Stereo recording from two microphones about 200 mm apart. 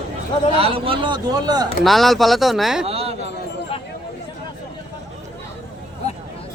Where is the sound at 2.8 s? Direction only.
30° right (ahead or behind).